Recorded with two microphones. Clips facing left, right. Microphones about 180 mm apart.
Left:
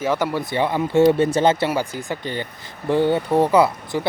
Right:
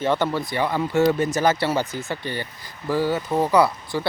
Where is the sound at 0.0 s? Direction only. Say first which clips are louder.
Even; 5° left (ahead or behind).